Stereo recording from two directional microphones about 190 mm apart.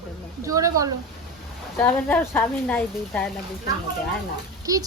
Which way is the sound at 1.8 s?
10° left (ahead or behind).